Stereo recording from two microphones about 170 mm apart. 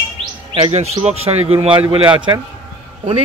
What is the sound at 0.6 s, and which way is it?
Speech, 35° right (ahead or behind).